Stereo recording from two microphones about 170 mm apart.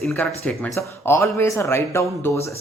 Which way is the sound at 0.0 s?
5° left (ahead or behind).